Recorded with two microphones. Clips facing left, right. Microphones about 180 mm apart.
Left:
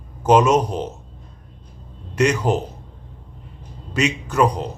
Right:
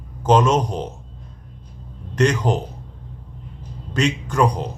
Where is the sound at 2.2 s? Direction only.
10° left (ahead or behind).